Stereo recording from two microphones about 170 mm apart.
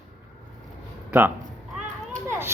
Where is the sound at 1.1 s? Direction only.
10° right (ahead or behind).